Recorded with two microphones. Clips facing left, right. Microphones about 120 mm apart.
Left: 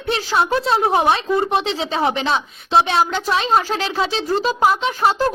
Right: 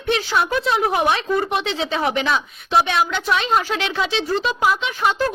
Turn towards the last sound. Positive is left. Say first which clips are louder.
# left 3 dB
turn(degrees=35)  # may be behind; listen again after turning